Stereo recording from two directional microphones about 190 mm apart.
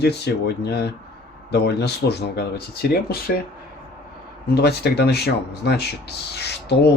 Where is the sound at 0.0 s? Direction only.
60° left (ahead or behind).